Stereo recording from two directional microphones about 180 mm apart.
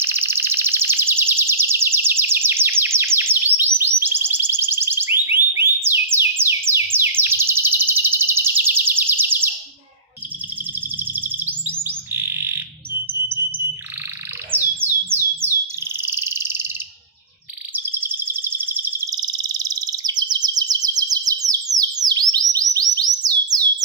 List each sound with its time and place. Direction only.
0.0 s a sound: 15° right (ahead or behind)
5.3 s theremin: 15° right (ahead or behind)
11.0 s chirp: 10° right (ahead or behind)
11.9 s bird: 15° right (ahead or behind)
14.5 s bird: 10° right (ahead or behind)
16.0 s frog: 15° right (ahead or behind)
17.8 s chirp: 10° right (ahead or behind)